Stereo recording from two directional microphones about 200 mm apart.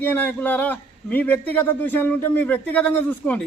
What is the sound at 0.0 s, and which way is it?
A man's voice, 10° left (ahead or behind).